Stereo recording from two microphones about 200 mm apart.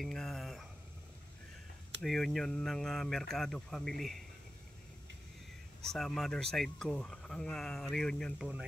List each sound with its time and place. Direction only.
0.0 s a sound: centre (ahead or behind)
2.0 s speech: centre (ahead or behind)
5.9 s speech: centre (ahead or behind)